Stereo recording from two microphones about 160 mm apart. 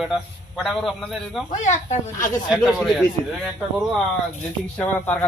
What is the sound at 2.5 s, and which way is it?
Speech, centre (ahead or behind).